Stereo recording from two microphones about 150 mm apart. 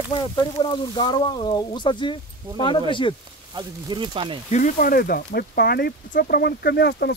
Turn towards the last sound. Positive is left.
turn(degrees=90)